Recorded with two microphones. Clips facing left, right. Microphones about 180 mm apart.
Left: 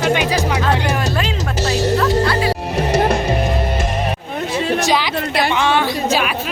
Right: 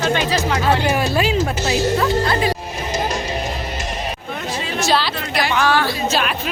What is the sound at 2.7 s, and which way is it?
Music, 65° left (ahead or behind).